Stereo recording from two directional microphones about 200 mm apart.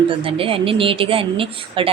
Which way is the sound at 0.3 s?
25° right (ahead or behind).